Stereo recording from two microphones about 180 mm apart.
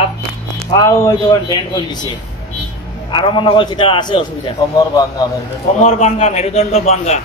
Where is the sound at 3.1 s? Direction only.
25° left (ahead or behind).